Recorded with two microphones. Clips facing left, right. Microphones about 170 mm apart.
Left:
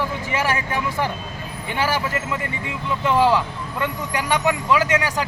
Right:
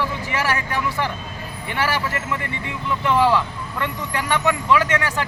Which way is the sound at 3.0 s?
15° left (ahead or behind).